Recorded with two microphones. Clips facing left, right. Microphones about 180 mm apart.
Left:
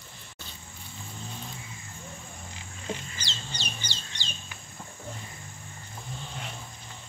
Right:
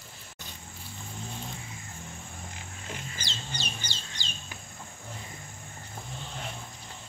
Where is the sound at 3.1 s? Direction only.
50° right (ahead or behind).